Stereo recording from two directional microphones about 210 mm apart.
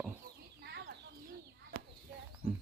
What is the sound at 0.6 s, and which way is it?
Chicken, 55° right (ahead or behind).